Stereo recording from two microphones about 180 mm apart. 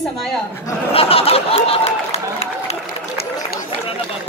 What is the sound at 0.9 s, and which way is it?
Speech, 30° left (ahead or behind).